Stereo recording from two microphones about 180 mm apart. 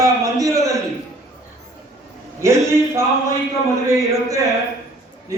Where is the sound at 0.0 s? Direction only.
20° right (ahead or behind).